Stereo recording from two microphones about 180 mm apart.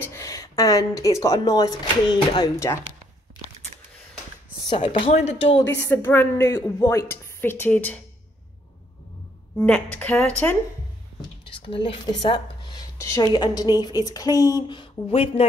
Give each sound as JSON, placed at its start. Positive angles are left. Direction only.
{"t": 0.0, "sound": "speech", "side_deg": 15}
{"t": 4.6, "sound": "speech", "side_deg": 30}
{"t": 5.8, "sound": "a woman's voice", "side_deg": 15}
{"t": 9.6, "sound": "a woman's voice", "side_deg": 5}
{"t": 11.1, "sound": "speech", "side_deg": 30}